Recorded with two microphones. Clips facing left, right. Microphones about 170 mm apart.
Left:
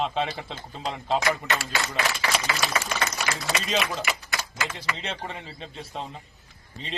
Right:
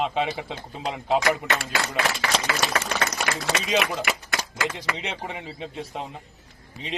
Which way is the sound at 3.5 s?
75° right (ahead or behind).